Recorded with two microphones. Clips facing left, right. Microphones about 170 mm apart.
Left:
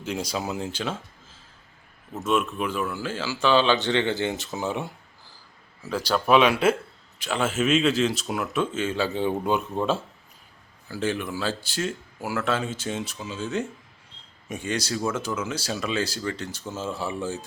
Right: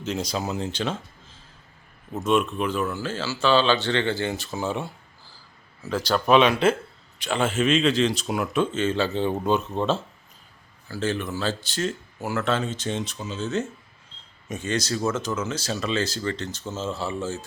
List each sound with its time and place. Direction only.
0.0 s speech: 10° left (ahead or behind)
2.2 s speech: 5° left (ahead or behind)